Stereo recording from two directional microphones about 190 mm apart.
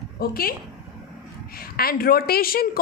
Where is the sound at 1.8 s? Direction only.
50° left (ahead or behind).